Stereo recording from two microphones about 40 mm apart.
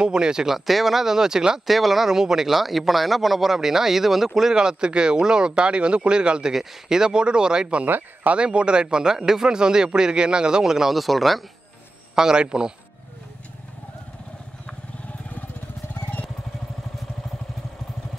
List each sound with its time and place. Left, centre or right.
0.0 s speech: right
0.7 s speech: centre
1.7 s speech: centre; by 6.5 s right
6.5 s speech: centre
7.8 s speech: right
8.3 s speech: right; by 11.4 s centre
12.2 s speech: centre